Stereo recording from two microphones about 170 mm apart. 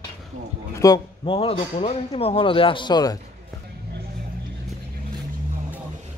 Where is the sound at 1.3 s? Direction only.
35° left (ahead or behind).